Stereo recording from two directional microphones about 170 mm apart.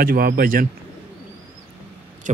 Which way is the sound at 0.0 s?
60° right (ahead or behind).